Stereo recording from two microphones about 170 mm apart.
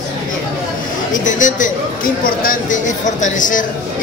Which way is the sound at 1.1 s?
50° left (ahead or behind).